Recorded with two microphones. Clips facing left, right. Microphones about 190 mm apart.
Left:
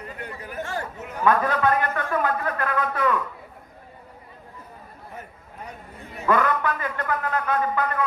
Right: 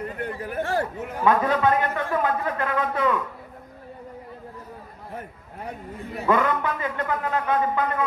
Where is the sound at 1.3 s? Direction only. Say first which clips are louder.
Right 1 dB; 20° right (ahead or behind).